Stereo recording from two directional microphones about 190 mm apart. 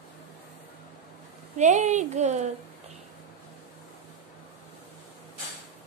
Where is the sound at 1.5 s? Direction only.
40° right (ahead or behind).